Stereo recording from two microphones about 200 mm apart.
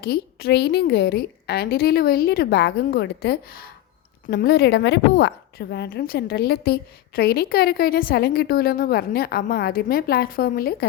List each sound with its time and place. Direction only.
0.0 s a woman's voice: 50° left (ahead or behind)